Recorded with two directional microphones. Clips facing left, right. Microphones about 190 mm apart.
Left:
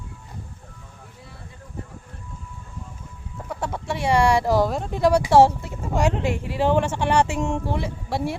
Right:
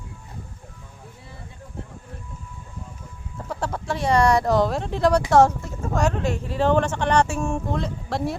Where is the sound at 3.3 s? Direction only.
Centre (ahead or behind).